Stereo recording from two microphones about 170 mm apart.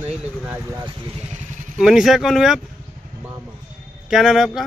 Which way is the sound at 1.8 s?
Centre (ahead or behind).